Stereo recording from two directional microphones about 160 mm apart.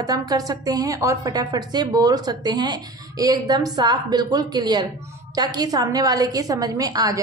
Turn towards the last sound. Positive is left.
turn(degrees=-25)  # may be behind; listen again after turning